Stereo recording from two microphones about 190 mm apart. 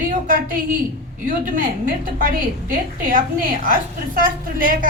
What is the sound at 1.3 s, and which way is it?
A woman's voice, 45° right (ahead or behind).